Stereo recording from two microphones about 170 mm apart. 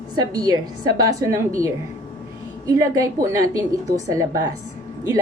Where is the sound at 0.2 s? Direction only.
25° right (ahead or behind).